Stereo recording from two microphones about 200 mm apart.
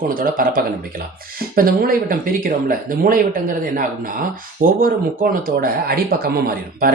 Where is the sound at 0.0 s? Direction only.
45° right (ahead or behind).